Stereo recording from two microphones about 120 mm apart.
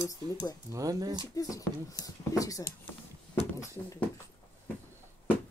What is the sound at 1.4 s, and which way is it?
Speech, 30° left (ahead or behind).